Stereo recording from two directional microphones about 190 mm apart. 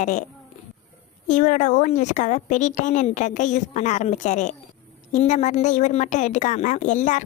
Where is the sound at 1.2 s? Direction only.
40° left (ahead or behind).